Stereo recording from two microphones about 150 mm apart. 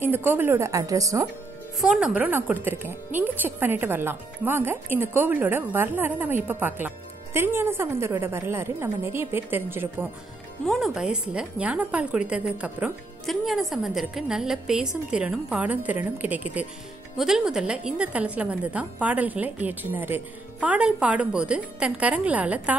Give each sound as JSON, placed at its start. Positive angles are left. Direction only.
{"t": 0.0, "sound": "speech", "side_deg": -15}
{"t": 1.8, "sound": "speech", "side_deg": -5}
{"t": 10.6, "sound": "a woman's voice", "side_deg": 0}